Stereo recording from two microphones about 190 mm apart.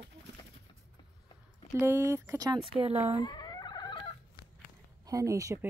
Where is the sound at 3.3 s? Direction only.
20° left (ahead or behind).